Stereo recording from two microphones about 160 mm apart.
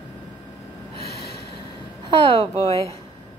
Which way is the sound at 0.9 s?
85° left.